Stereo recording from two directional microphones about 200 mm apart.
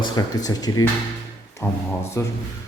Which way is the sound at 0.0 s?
20° left (ahead or behind).